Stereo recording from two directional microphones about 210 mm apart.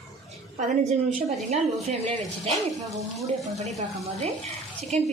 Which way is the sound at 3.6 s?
30° right (ahead or behind).